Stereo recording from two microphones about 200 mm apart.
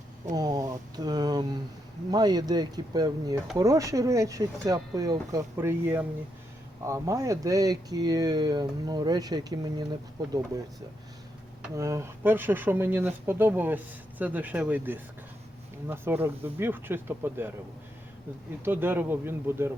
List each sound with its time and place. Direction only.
0.3 s speech: 20° right (ahead or behind)
11.8 s speech: 15° right (ahead or behind)
18.6 s speech: 10° right (ahead or behind)